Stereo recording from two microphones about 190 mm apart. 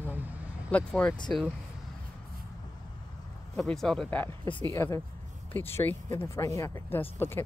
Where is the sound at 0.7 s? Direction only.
5° left (ahead or behind).